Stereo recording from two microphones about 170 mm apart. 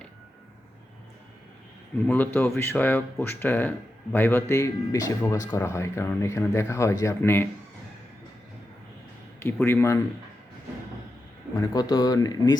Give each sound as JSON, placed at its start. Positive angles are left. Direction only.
{"t": 2.0, "sound": "speech", "side_deg": 10}
{"t": 9.4, "sound": "speech", "side_deg": 10}
{"t": 11.5, "sound": "speech", "side_deg": 20}